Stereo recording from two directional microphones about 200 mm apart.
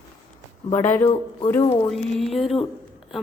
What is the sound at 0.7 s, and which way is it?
Speech, 10° left (ahead or behind).